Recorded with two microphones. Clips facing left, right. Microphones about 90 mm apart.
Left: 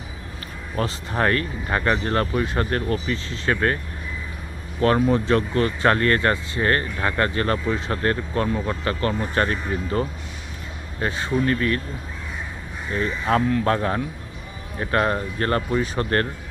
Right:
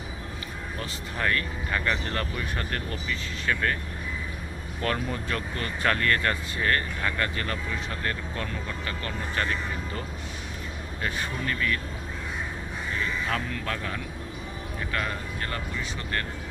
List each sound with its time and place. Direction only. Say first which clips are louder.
0.8 s speech: left 9 dB; 40° left (ahead or behind)
4.8 s speech: left 11 dB; 35° left (ahead or behind)
12.9 s speech: left 8 dB; 35° left (ahead or behind)